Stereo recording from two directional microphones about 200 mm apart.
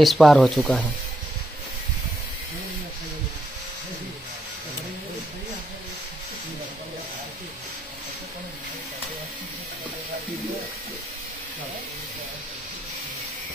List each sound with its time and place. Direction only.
0.0 s speech: centre (ahead or behind)